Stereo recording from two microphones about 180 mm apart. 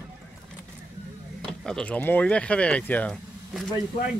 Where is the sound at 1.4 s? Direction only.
5° left (ahead or behind).